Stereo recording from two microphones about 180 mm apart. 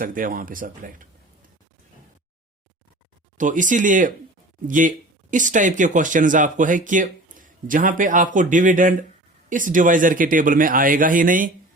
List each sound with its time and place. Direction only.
0.0 s speech: 50° right (ahead or behind)
3.3 s speech: 45° right (ahead or behind)